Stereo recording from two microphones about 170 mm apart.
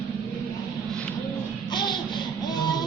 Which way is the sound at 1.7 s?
25° left (ahead or behind).